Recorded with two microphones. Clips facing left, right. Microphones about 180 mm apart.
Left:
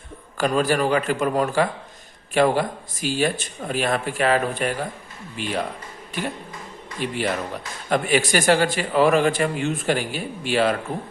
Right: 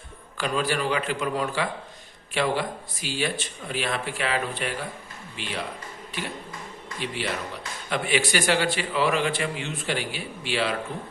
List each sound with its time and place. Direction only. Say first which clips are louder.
0.3 s a man's voice: left 6 dB; 45° left (ahead or behind)
7.0 s a man's voice: left 6 dB; 45° left (ahead or behind)